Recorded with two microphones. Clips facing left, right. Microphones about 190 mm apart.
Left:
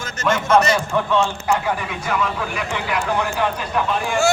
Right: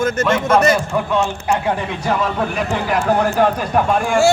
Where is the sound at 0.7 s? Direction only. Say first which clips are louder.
Right 1 dB; 10° right (ahead or behind).